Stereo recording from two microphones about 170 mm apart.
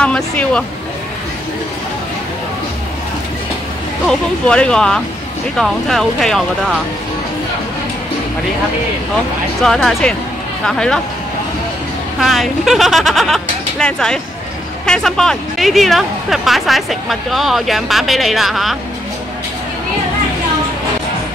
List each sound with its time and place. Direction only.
0.0 s speech: 5° left (ahead or behind)
4.1 s speech: 5° left (ahead or behind)
9.6 s speech: centre (ahead or behind)
12.2 s speech: centre (ahead or behind)